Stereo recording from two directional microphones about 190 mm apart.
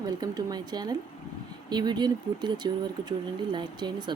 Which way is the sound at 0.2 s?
20° right (ahead or behind).